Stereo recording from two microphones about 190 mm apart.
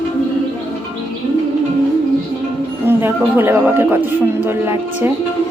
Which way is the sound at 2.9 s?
10° right (ahead or behind).